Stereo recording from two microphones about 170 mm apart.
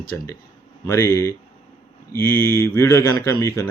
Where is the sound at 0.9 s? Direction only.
15° left (ahead or behind).